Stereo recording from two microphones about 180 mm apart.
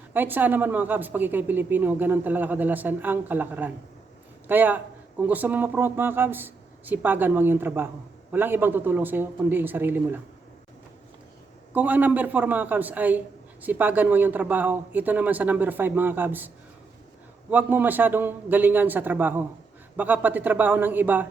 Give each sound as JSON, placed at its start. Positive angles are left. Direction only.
{"t": 0.1, "sound": "a man's voice", "side_deg": -10}
{"t": 11.7, "sound": "a man's voice", "side_deg": -10}
{"t": 17.5, "sound": "a man's voice", "side_deg": -10}